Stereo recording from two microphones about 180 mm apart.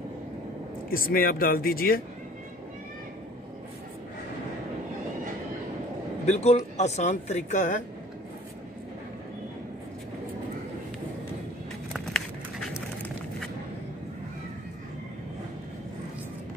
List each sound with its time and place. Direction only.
0.8 s speech: 55° left (ahead or behind)
6.2 s speech: 40° left (ahead or behind)